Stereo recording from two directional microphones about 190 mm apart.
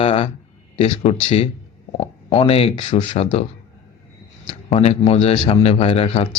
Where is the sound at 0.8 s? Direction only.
30° left (ahead or behind).